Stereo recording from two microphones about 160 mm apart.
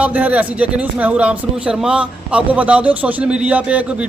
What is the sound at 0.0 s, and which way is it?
Speech, 10° right (ahead or behind).